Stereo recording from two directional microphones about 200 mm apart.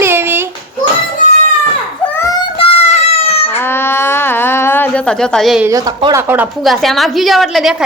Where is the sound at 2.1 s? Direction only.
15° left (ahead or behind).